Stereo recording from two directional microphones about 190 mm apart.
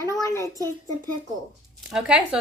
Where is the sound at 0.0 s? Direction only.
15° left (ahead or behind).